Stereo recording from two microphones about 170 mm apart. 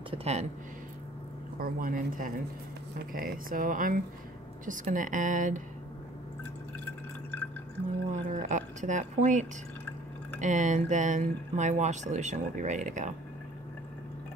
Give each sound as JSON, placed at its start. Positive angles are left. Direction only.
{"t": 0.1, "sound": "speech", "side_deg": -40}
{"t": 1.6, "sound": "speech", "side_deg": -55}
{"t": 6.8, "sound": "drip", "side_deg": 10}
{"t": 8.1, "sound": "a sound", "side_deg": -45}
{"t": 10.4, "sound": "speech", "side_deg": -45}